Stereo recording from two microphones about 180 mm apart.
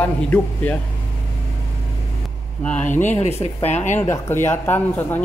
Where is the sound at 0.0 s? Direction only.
10° left (ahead or behind).